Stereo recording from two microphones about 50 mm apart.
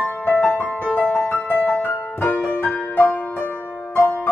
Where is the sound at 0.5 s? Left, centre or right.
Left.